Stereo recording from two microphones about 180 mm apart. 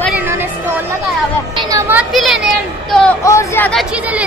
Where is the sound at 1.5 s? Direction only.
15° right (ahead or behind).